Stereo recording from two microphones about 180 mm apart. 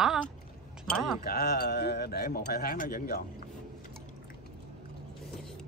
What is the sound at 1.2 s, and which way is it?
A man's voice, 60° left (ahead or behind).